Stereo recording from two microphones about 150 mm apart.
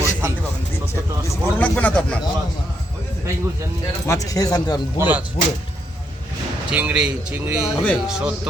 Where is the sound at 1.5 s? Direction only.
10° left (ahead or behind).